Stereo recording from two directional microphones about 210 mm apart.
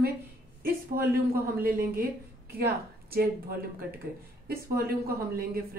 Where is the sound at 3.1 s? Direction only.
45° right (ahead or behind).